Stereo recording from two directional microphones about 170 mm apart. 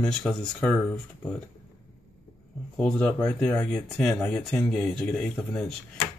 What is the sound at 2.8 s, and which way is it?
Speech, 5° left (ahead or behind).